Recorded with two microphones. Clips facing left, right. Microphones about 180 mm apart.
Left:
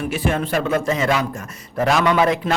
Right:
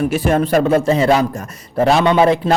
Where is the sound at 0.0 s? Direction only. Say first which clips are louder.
Right 6 dB; 40° right (ahead or behind).